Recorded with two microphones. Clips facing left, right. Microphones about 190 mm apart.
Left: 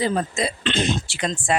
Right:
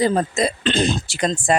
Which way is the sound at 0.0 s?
40° right (ahead or behind).